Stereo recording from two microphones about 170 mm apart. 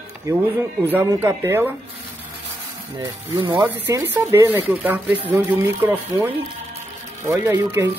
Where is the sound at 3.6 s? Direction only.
15° right (ahead or behind).